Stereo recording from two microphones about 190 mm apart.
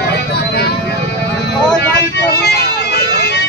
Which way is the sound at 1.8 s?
60° left (ahead or behind).